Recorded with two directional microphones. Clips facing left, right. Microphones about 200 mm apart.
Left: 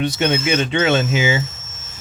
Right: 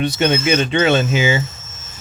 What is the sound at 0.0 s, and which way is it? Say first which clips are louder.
Speech: right 2 dB; 35° right (ahead or behind).